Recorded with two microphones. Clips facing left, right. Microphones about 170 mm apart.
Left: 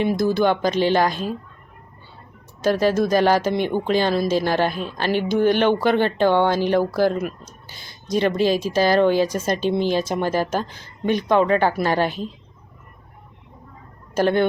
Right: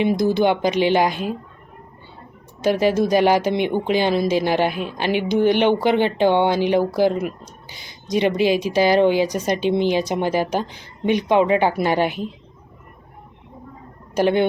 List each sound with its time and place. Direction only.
0.0 s speech: 20° right (ahead or behind)
2.6 s speech: 15° right (ahead or behind)
14.2 s speech: 15° right (ahead or behind)